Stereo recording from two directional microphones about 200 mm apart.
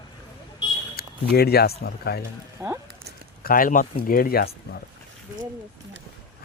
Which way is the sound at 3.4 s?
45° left (ahead or behind).